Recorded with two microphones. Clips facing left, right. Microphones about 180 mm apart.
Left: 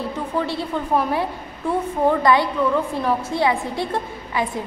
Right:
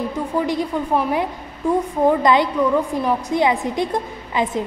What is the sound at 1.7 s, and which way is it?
A woman's voice, 15° right (ahead or behind).